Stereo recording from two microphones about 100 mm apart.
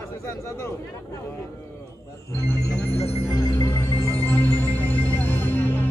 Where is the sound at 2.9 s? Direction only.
90° left.